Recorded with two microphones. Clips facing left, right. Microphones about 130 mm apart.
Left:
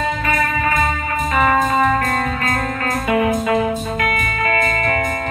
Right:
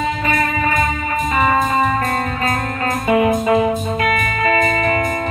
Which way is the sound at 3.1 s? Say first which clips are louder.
Right 3 dB; 20° right (ahead or behind).